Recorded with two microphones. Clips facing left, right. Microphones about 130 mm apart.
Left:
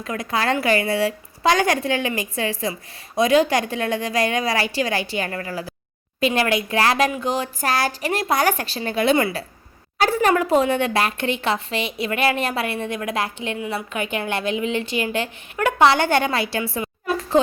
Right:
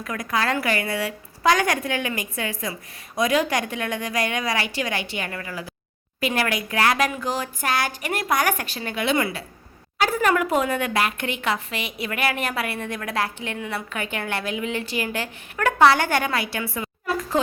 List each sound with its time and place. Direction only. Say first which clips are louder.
0.0 s a woman's voice: left 2 dB; 25° left (ahead or behind)
6.1 s a woman's voice: left 4 dB; 25° left (ahead or behind)
7.6 s a woman's voice: left 2 dB; 35° left (ahead or behind)